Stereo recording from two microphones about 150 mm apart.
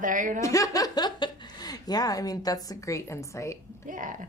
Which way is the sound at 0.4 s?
20° left (ahead or behind).